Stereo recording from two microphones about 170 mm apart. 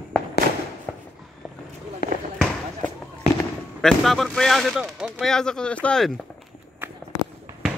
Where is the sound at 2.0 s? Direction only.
65° left (ahead or behind).